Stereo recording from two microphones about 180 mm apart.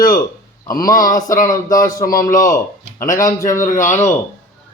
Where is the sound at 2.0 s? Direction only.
50° left (ahead or behind).